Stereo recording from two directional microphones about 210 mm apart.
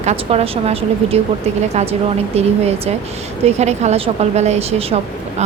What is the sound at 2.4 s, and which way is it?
A woman's voice, 30° right (ahead or behind).